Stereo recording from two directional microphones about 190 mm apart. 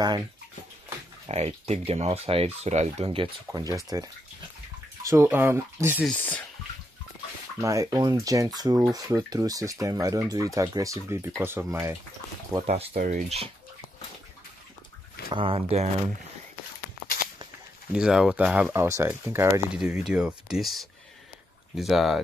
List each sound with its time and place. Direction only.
1.2 s speech: 35° right (ahead or behind)
3.9 s speech: 20° right (ahead or behind)
5.9 s speech: 10° left (ahead or behind)
7.6 s speech: 15° right (ahead or behind)
12.6 s speech: 35° right (ahead or behind)
12.9 s speech: 45° right (ahead or behind)
15.2 s speech: 30° right (ahead or behind)
17.9 s speech: 5° right (ahead or behind)
19.7 s speech: 5° right (ahead or behind)